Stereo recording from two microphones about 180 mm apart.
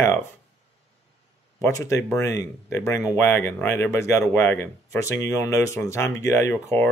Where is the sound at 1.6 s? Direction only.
15° left (ahead or behind).